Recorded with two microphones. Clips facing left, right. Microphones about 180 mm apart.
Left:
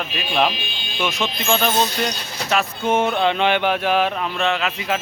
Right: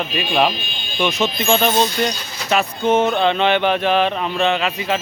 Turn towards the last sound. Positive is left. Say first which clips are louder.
# right 3 dB
turn(degrees=0)  # may be behind; listen again after turning